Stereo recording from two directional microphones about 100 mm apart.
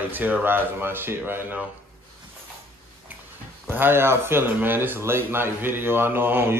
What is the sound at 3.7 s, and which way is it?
Speech, 20° right (ahead or behind).